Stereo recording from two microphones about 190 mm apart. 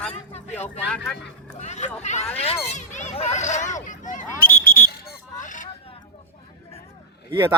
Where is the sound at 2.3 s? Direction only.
30° left (ahead or behind).